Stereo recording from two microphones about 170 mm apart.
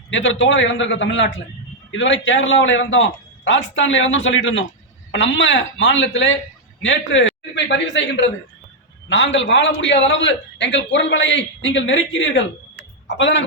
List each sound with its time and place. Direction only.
0.1 s a man's voice: 90° left